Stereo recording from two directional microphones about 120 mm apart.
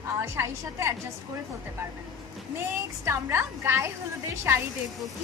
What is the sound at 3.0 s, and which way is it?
A woman's voice, 20° right (ahead or behind).